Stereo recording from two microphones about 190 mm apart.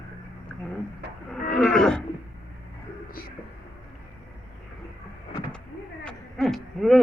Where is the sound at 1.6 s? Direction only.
5° left (ahead or behind).